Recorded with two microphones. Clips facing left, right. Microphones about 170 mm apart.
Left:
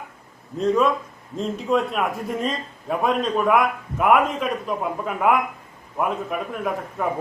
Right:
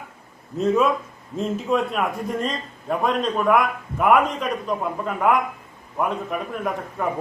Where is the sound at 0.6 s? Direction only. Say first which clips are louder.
Even; 5° right (ahead or behind).